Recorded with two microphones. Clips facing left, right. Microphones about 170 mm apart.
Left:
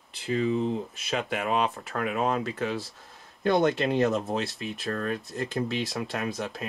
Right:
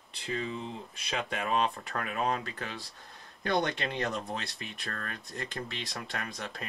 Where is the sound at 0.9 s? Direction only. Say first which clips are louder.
Left 5 dB; 5° left (ahead or behind).